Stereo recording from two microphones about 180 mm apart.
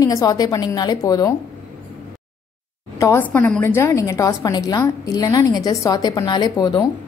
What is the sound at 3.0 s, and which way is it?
A woman's voice, 10° left (ahead or behind).